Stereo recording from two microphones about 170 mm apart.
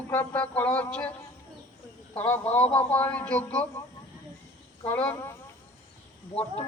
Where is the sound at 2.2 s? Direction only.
10° left (ahead or behind).